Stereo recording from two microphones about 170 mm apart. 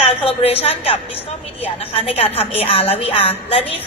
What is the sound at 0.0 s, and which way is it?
A woman's voice, 35° left (ahead or behind).